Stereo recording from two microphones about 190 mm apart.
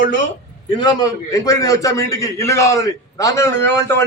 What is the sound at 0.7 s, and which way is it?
A man's voice, 25° left (ahead or behind).